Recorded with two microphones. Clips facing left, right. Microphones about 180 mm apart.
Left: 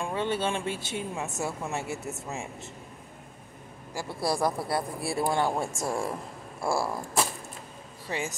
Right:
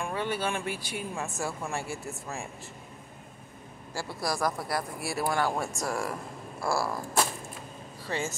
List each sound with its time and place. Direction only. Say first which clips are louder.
0.0 s speech: left 2 dB; 25° left (ahead or behind)
4.2 s speech: left 3 dB; 30° left (ahead or behind)
8.1 s speech: even; 15° left (ahead or behind)